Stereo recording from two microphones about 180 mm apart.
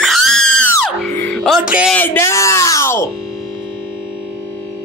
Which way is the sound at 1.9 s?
10° left (ahead or behind).